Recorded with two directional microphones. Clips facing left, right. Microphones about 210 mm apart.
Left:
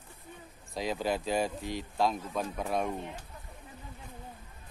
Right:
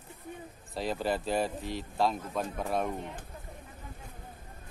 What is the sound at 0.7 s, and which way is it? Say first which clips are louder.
Speech: even; centre (ahead or behind).